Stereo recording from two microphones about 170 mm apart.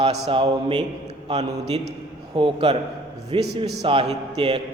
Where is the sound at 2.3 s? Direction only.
30° right (ahead or behind).